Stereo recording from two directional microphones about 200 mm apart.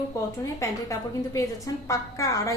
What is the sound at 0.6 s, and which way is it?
A woman's voice, 15° left (ahead or behind).